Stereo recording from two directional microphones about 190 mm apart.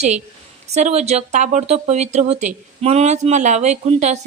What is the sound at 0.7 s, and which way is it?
Speech, 35° right (ahead or behind).